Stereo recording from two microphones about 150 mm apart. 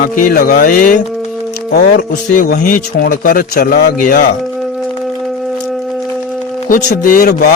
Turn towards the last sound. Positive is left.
turn(degrees=75)  # may be behind; listen again after turning